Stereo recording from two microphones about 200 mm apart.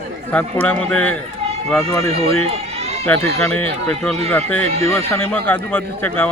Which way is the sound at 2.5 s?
30° right (ahead or behind).